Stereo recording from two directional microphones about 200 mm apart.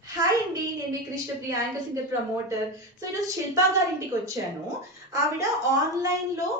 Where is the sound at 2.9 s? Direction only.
15° right (ahead or behind).